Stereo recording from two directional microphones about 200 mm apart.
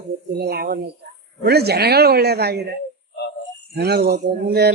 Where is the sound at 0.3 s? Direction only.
50° right (ahead or behind).